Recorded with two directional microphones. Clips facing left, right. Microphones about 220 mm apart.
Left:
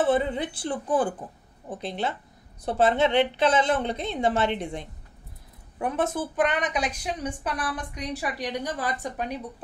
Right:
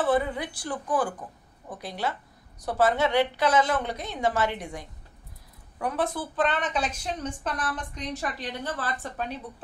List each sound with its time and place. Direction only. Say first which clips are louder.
0.0 s a woman's voice: left 2 dB; 25° left (ahead or behind)